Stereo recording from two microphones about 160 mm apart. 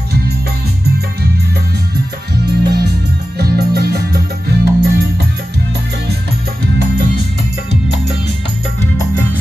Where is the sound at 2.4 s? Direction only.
90° right.